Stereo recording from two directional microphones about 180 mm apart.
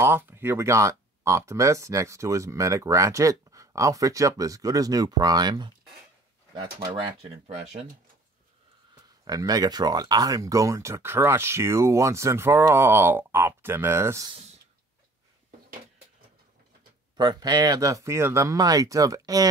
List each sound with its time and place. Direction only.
0.0 s speech: 10° right (ahead or behind); by 7.5 s 30° right (ahead or behind)
9.2 s speech: 20° right (ahead or behind)
17.2 s speech: 25° right (ahead or behind)